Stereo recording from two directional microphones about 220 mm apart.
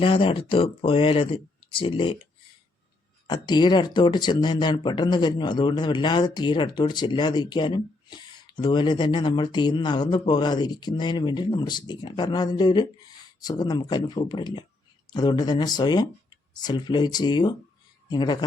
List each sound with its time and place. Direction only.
0.0 s speech: 25° left (ahead or behind)
3.2 s speech: 20° left (ahead or behind)